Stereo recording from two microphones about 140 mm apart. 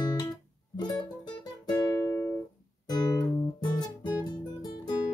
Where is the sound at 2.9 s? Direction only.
30° left (ahead or behind).